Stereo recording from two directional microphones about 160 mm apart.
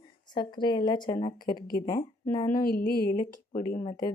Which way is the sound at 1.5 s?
65° left (ahead or behind).